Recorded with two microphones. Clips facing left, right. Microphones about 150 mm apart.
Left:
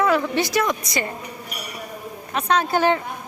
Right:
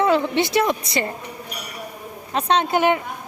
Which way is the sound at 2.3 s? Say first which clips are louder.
Right 1 dB; 25° right (ahead or behind).